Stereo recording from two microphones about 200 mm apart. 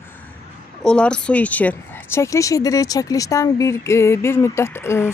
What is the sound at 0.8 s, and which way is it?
Speech, 5° left (ahead or behind).